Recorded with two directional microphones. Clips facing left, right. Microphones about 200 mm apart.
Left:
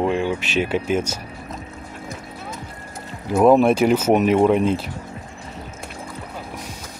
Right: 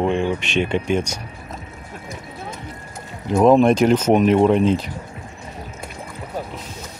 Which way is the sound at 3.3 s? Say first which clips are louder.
Right 1 dB; 5° left (ahead or behind).